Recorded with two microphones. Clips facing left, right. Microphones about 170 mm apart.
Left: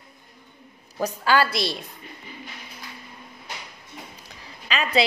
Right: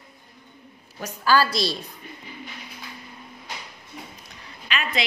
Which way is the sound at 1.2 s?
25° left (ahead or behind).